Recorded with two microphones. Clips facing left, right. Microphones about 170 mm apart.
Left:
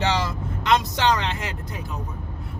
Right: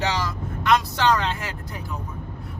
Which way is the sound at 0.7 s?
20° left (ahead or behind).